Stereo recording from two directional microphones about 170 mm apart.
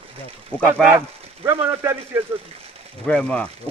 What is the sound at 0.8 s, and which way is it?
A man's voice, 15° right (ahead or behind).